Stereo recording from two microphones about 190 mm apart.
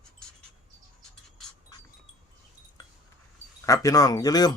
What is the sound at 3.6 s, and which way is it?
Speech, 15° left (ahead or behind).